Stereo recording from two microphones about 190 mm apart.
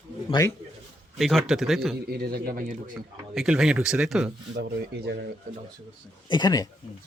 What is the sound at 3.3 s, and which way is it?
Speech, centre (ahead or behind).